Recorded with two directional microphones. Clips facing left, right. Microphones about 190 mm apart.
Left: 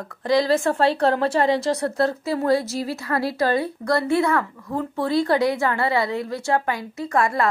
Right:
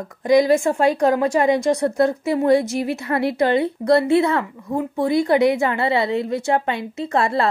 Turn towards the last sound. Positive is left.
turn(degrees=-25)  # may be behind; listen again after turning